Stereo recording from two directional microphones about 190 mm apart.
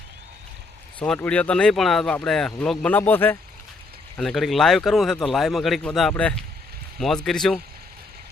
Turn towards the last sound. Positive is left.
turn(degrees=0)  # may be behind; listen again after turning